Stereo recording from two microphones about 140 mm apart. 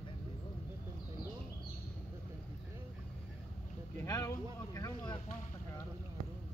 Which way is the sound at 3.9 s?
25° left (ahead or behind).